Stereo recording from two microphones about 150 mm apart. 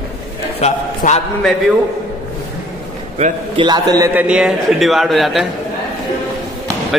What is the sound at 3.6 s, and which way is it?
Speech, 25° right (ahead or behind).